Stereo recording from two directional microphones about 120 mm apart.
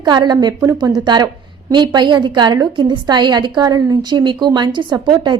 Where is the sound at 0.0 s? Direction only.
35° right (ahead or behind).